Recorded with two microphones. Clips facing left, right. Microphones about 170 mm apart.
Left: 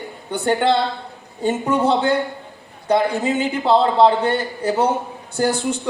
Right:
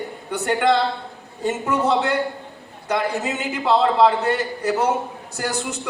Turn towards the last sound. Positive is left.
turn(degrees=30)  # may be behind; listen again after turning